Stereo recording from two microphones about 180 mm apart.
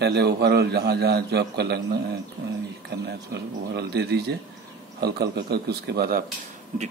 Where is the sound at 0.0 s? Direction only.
65° right (ahead or behind).